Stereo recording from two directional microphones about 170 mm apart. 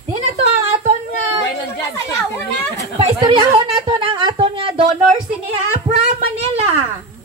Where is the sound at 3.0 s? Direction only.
30° right (ahead or behind).